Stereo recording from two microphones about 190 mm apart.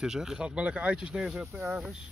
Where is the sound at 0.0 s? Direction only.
5° right (ahead or behind).